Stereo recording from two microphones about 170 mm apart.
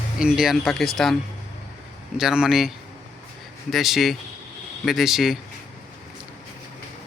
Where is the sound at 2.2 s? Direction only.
5° right (ahead or behind).